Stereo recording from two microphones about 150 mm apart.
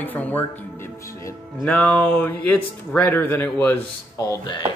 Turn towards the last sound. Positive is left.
turn(degrees=30)  # may be behind; listen again after turning